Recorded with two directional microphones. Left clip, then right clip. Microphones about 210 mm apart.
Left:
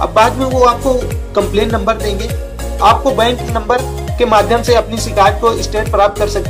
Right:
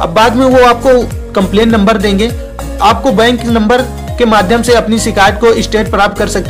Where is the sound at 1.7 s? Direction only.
35° right (ahead or behind).